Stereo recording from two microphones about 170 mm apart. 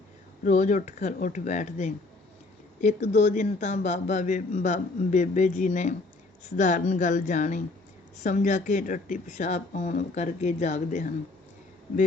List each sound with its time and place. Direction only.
0.4 s speech: 45° left (ahead or behind)